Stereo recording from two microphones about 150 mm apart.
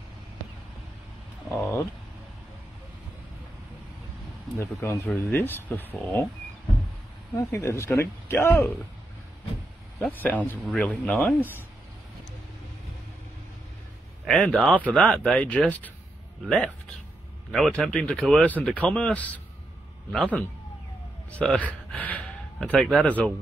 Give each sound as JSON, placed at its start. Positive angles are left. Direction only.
{"t": 1.5, "sound": "a sound", "side_deg": 15}
{"t": 4.6, "sound": "speech", "side_deg": 15}
{"t": 7.3, "sound": "speech", "side_deg": 20}
{"t": 9.9, "sound": "speech", "side_deg": 10}
{"t": 14.2, "sound": "speech", "side_deg": 5}
{"t": 21.3, "sound": "speech", "side_deg": 10}